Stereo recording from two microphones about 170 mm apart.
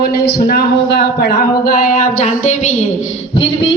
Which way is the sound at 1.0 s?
70° left (ahead or behind).